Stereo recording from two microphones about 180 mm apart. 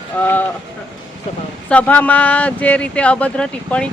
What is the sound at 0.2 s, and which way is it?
Speech, 10° left (ahead or behind).